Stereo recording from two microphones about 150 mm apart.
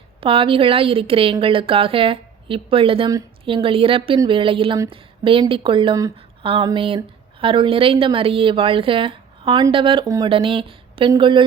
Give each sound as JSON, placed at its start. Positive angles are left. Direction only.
{"t": 0.2, "sound": "a woman's voice", "side_deg": -35}